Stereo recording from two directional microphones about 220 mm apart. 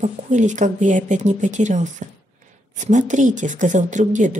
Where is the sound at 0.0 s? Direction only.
35° right (ahead or behind).